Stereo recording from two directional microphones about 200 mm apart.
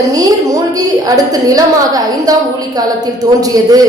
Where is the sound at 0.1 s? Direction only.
20° right (ahead or behind).